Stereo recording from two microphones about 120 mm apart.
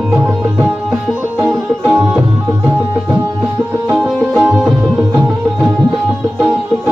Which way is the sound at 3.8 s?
20° right (ahead or behind).